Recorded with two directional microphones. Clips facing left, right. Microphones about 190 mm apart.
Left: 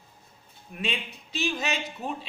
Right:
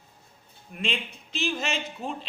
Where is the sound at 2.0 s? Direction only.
5° left (ahead or behind).